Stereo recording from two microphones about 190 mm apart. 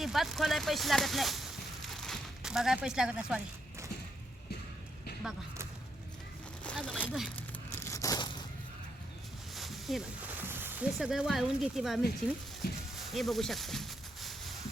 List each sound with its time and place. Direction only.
0.0 s speech: centre (ahead or behind)
5.2 s speech: 5° right (ahead or behind)
6.7 s speech: 5° left (ahead or behind)
7.3 s tearing: 15° left (ahead or behind)
9.6 s a sound: centre (ahead or behind)
10.9 s speech: 5° right (ahead or behind)
12.6 s speech: 55° left (ahead or behind)
13.0 s a sound: centre (ahead or behind)